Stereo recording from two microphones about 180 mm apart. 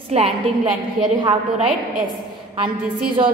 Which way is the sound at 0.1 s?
35° right (ahead or behind).